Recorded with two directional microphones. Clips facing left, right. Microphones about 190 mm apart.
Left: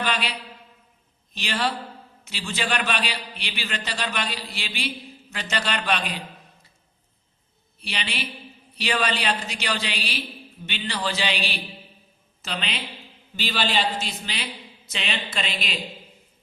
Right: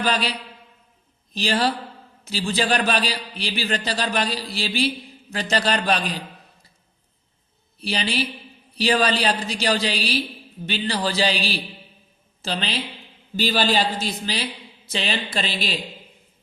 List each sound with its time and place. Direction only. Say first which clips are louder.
0.0 s a man's voice: right 4 dB; 35° right (ahead or behind)
7.8 s a man's voice: right 8 dB; 35° right (ahead or behind)